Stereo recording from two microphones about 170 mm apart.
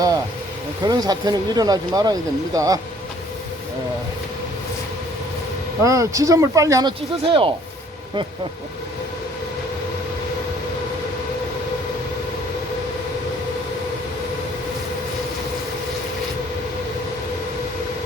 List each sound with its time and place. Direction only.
0.9 s speech: 25° right (ahead or behind)
5.8 s speech: 20° right (ahead or behind)